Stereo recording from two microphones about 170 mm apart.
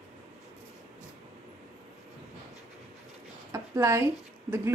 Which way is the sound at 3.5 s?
15° right (ahead or behind).